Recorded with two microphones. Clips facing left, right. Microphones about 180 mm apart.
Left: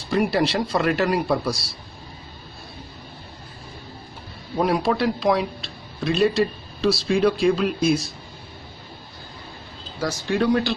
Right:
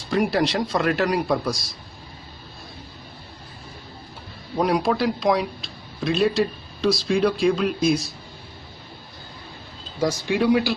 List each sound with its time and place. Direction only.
0.1 s a man's voice: centre (ahead or behind)
1.5 s a man's voice: 30° left (ahead or behind)
4.6 s a man's voice: centre (ahead or behind)
9.9 s speech: 15° right (ahead or behind)